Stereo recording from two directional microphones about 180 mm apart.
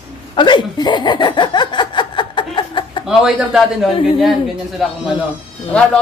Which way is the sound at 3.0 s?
5° right (ahead or behind).